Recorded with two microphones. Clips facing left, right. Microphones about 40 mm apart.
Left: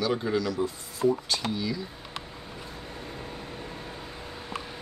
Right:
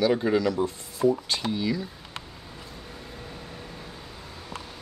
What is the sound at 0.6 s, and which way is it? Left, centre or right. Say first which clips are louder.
Speech: right 2 dB; right.